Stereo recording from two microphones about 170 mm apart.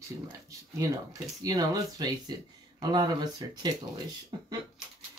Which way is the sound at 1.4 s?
25° right (ahead or behind).